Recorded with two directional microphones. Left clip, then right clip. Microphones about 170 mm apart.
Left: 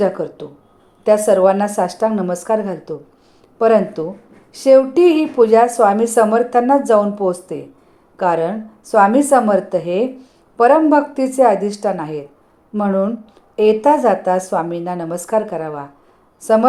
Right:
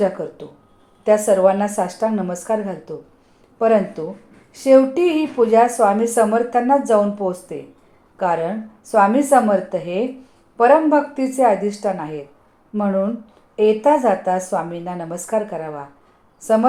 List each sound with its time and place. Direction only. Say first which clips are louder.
0.0 s a woman's voice: left 3 dB; 25° left (ahead or behind)